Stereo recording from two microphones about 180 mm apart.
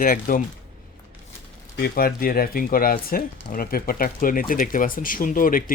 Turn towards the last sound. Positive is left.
turn(degrees=50)  # may be behind; listen again after turning